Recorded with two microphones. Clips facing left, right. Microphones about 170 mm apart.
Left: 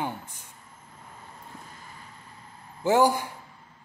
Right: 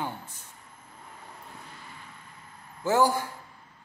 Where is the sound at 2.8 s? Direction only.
15° left (ahead or behind).